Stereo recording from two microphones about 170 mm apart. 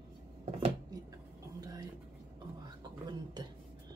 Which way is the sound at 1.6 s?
20° right (ahead or behind).